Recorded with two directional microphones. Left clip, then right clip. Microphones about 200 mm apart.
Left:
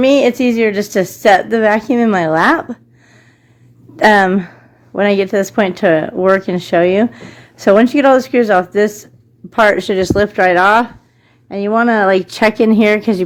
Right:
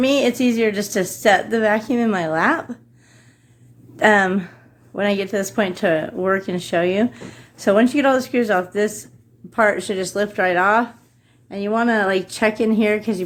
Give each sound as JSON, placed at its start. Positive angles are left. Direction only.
{"t": 0.0, "sound": "a woman's voice", "side_deg": 40}
{"t": 3.9, "sound": "speech", "side_deg": 40}